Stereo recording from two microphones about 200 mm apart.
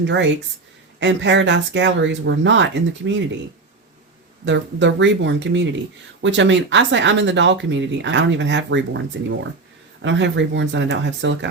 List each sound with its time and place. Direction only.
0.0 s speech: 60° right (ahead or behind)
4.4 s speech: 65° right (ahead or behind)